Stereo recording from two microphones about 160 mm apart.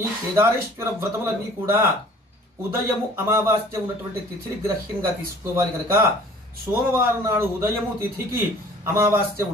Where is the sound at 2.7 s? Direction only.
15° right (ahead or behind).